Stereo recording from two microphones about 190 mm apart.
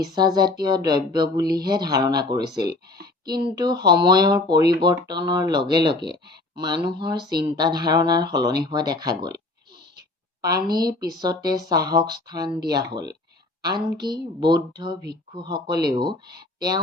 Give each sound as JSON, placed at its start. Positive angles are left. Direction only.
{"t": 0.0, "sound": "speech", "side_deg": -20}
{"t": 10.4, "sound": "speech", "side_deg": -20}